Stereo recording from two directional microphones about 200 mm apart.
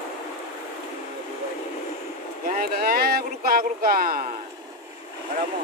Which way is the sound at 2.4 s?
50° right (ahead or behind).